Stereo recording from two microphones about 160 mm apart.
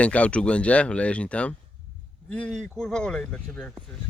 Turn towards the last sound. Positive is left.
turn(degrees=5)  # may be behind; listen again after turning